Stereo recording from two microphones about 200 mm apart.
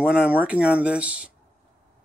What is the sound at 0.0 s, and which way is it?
Speech, 5° right (ahead or behind).